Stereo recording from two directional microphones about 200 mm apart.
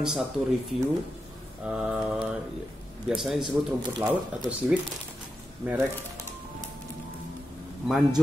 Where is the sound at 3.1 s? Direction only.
5° right (ahead or behind).